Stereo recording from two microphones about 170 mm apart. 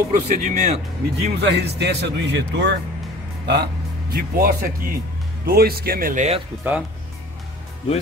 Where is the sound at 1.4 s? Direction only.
80° right.